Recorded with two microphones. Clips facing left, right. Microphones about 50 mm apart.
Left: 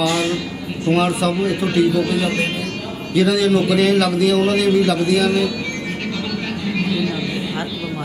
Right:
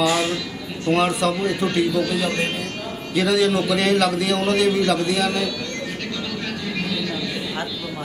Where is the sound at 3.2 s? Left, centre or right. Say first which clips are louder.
Left 3 dB; centre.